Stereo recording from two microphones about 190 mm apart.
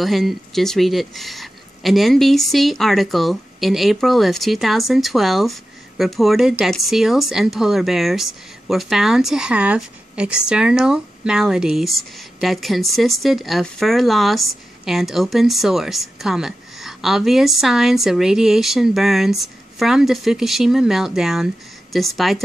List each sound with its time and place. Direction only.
0.0 s speech: centre (ahead or behind)